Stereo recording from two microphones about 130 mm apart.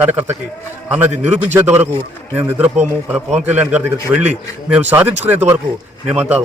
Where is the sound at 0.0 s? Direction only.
15° right (ahead or behind).